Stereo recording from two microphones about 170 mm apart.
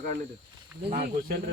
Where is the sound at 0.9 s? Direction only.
55° right (ahead or behind).